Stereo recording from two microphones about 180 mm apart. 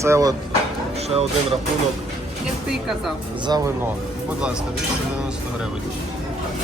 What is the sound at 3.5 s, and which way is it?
Speech, 20° right (ahead or behind).